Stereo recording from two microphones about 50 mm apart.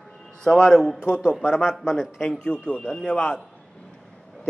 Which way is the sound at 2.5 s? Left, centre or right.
Left.